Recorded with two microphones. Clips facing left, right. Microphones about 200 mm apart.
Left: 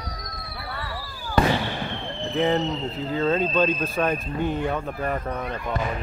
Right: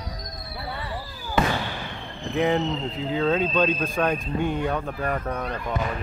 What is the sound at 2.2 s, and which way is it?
Speech, centre (ahead or behind).